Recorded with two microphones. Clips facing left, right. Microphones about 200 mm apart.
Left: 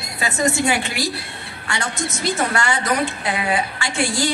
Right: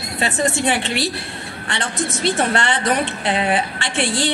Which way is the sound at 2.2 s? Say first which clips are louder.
Right 2 dB; 25° right (ahead or behind).